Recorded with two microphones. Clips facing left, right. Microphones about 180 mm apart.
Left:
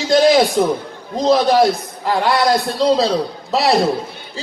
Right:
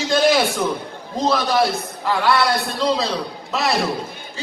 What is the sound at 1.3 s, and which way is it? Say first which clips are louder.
A man's voice: left 7 dB; 40° left (ahead or behind).